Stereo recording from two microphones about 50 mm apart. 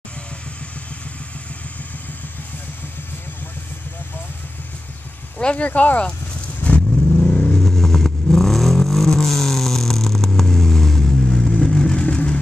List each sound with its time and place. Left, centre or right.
5.4 s speech: left
6.6 s vehicle: left
7.6 s vehicle: centre